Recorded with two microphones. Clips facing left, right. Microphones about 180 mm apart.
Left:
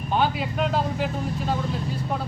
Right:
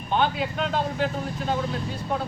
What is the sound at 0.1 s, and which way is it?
Speech, 5° left (ahead or behind).